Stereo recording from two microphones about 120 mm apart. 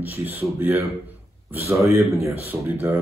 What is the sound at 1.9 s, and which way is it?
Speech, 25° right (ahead or behind).